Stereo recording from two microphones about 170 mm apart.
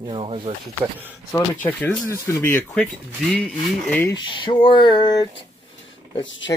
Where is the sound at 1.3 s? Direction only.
10° left (ahead or behind).